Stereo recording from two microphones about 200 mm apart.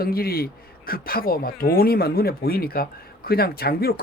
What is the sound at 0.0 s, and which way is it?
Speech, 50° left (ahead or behind).